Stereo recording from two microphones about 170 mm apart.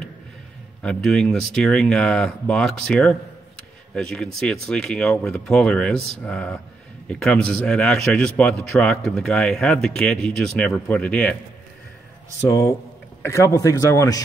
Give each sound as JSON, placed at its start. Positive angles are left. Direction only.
{"t": 0.8, "sound": "speech", "side_deg": 5}
{"t": 12.4, "sound": "a man's voice", "side_deg": 15}